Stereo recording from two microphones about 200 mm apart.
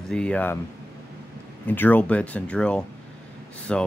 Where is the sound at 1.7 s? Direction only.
10° left (ahead or behind).